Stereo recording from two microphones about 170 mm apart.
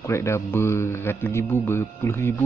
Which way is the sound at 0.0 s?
15° left (ahead or behind).